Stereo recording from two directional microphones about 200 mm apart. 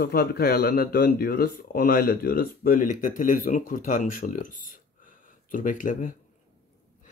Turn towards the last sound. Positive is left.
turn(degrees=40)  # may be behind; listen again after turning